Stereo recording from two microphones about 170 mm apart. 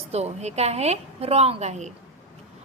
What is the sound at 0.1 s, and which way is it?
A woman's voice, 40° right (ahead or behind).